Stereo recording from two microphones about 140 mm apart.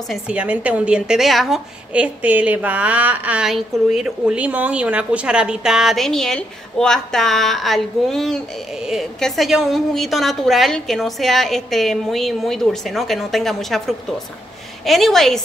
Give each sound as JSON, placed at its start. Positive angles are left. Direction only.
{"t": 0.1, "sound": "a woman's voice", "side_deg": -10}